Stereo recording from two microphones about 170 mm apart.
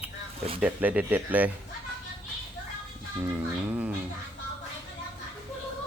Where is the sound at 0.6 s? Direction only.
10° right (ahead or behind).